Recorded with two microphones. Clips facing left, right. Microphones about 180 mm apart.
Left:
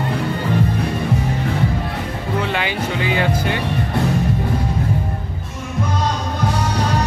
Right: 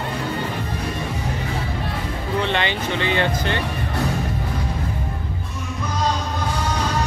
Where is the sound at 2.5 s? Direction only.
5° left (ahead or behind).